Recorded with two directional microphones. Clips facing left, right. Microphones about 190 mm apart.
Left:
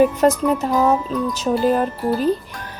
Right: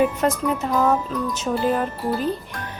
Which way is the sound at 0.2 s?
40° left (ahead or behind).